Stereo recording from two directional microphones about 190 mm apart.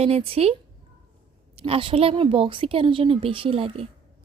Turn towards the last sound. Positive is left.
turn(degrees=-30)  # may be behind; listen again after turning